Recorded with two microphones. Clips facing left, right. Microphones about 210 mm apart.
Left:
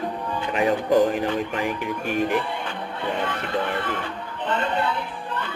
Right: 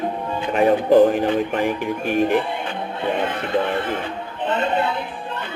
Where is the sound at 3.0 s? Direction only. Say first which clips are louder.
Right 4 dB; 20° right (ahead or behind).